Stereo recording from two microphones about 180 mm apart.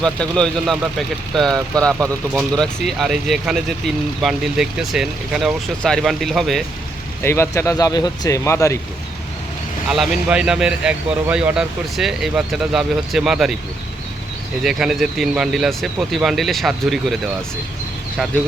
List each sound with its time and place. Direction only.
0.0 s speech: 5° left (ahead or behind)
7.2 s speech: 15° left (ahead or behind)
9.9 s speech: 5° right (ahead or behind)
14.6 s speech: centre (ahead or behind)